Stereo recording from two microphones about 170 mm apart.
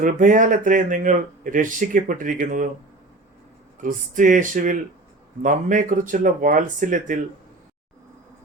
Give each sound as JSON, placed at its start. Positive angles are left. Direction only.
{"t": 0.0, "sound": "speech", "side_deg": -50}
{"t": 3.8, "sound": "speech", "side_deg": -50}